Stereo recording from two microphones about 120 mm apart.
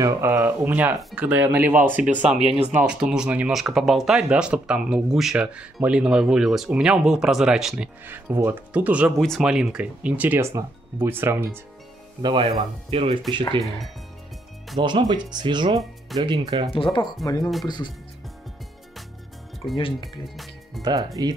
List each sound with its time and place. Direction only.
0.3 s speech: 15° right (ahead or behind)
7.7 s speech: 15° right (ahead or behind)
12.2 s speech: 35° right (ahead or behind)
12.9 s speech: 55° right (ahead or behind)
14.8 s speech: 40° right (ahead or behind)
16.7 s speech: 45° left (ahead or behind)
19.6 s speech: 45° left (ahead or behind)
20.8 s speech: centre (ahead or behind)
21.2 s speech: 35° right (ahead or behind)